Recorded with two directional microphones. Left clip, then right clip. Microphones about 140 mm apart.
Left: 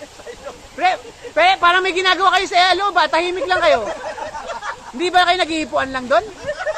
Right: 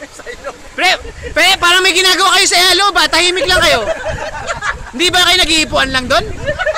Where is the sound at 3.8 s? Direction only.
40° right (ahead or behind).